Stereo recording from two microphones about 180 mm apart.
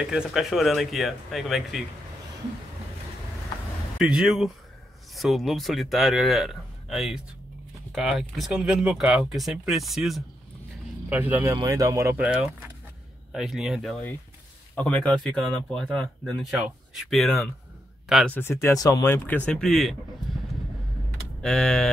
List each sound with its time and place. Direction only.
0.0 s speech: 5° right (ahead or behind)
4.0 s speech: 5° right (ahead or behind)
13.3 s speech: centre (ahead or behind)
21.4 s speech: 5° left (ahead or behind)